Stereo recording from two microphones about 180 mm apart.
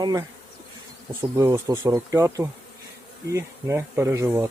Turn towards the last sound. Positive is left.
turn(degrees=-15)  # may be behind; listen again after turning